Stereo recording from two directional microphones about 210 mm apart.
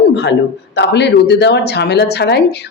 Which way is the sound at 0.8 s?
55° left (ahead or behind).